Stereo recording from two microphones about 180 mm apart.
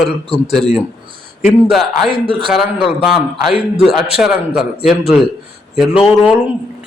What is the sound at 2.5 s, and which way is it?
A man's voice, centre (ahead or behind).